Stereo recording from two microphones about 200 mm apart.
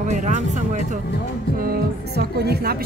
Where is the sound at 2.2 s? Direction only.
50° right (ahead or behind).